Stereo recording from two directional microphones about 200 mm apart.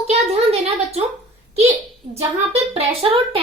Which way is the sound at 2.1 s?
30° right (ahead or behind).